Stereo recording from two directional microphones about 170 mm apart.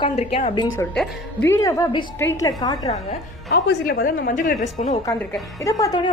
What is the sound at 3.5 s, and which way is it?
A woman's voice, 65° left (ahead or behind).